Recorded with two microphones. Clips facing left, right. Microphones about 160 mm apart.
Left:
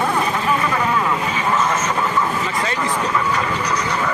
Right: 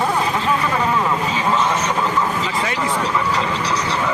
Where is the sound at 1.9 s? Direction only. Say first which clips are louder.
Even; 10° right (ahead or behind).